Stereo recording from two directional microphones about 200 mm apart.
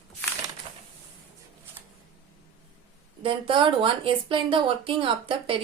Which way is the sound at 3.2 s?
25° right (ahead or behind).